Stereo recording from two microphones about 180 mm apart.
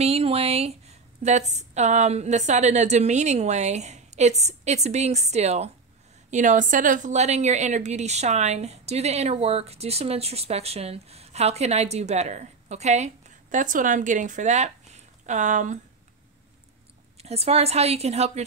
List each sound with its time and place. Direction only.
0.0 s a woman's voice: 35° right (ahead or behind)
17.2 s a woman's voice: 35° right (ahead or behind)